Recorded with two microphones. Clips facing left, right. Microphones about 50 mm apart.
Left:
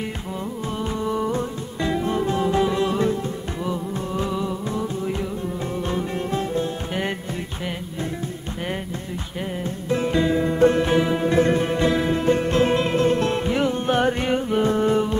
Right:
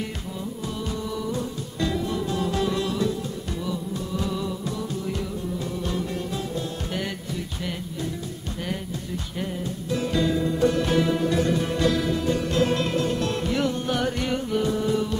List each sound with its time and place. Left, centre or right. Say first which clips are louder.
1.0 s music: left 8 dB; left
9.8 s music: left 4 dB; left